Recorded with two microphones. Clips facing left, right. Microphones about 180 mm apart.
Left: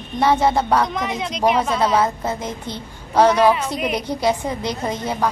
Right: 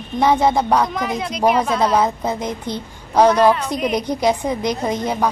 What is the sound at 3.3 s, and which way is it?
Speech, 10° left (ahead or behind).